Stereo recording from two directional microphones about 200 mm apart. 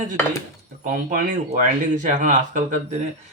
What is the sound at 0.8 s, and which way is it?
Speech, 45° right (ahead or behind).